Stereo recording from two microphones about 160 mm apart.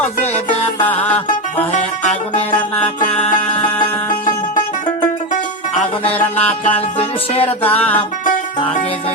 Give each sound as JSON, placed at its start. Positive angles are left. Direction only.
{"t": 0.8, "sound": "music", "side_deg": 10}
{"t": 1.7, "sound": "music", "side_deg": 45}
{"t": 6.1, "sound": "music", "side_deg": 10}
{"t": 7.3, "sound": "music", "side_deg": 35}
{"t": 7.7, "sound": "music", "side_deg": 10}